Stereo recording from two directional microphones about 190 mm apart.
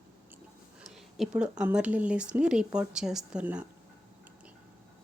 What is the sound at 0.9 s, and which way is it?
Speech, 5° right (ahead or behind).